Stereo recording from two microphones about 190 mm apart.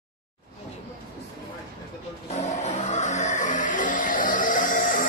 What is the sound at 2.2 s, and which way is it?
Music, 35° left (ahead or behind).